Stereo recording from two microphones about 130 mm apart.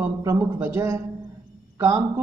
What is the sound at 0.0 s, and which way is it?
Speech, 25° right (ahead or behind).